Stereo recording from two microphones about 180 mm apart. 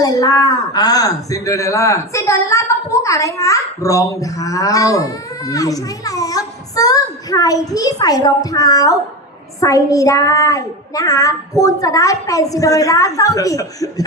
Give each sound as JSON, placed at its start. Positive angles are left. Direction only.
{"t": 0.0, "sound": "speech", "side_deg": 20}